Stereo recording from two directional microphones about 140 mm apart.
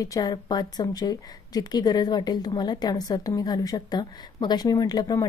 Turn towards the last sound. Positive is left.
turn(degrees=25)  # may be behind; listen again after turning